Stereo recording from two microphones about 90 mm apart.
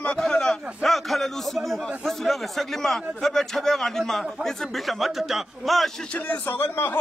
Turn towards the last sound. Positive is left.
turn(degrees=20)  # may be behind; listen again after turning